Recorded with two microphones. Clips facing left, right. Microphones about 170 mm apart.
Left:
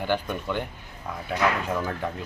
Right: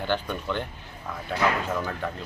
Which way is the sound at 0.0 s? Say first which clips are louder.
Left 1 dB; 10° left (ahead or behind).